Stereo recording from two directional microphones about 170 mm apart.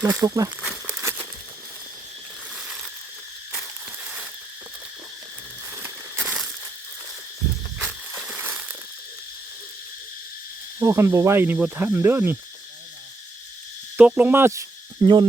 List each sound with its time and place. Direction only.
0.0 s speech: 15° right (ahead or behind)
2.6 s a sound: 5° right (ahead or behind)
4.0 s a sound: 5° right (ahead or behind)
5.7 s crumpling: 15° right (ahead or behind)
6.2 s crushing: 5° right (ahead or behind)
8.3 s crumpling: 10° right (ahead or behind)
10.8 s speech: 15° right (ahead or behind)
13.9 s cricket: 10° right (ahead or behind); by 15.3 s 25° right (ahead or behind)